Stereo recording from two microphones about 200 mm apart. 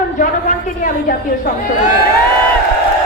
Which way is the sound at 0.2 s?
40° left (ahead or behind).